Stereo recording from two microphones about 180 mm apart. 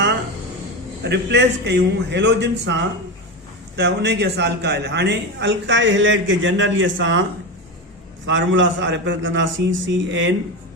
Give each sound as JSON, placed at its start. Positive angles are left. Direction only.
{"t": 1.0, "sound": "a man's voice", "side_deg": -75}
{"t": 8.3, "sound": "a man's voice", "side_deg": -90}